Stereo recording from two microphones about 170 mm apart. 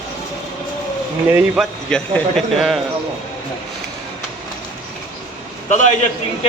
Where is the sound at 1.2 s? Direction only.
10° right (ahead or behind).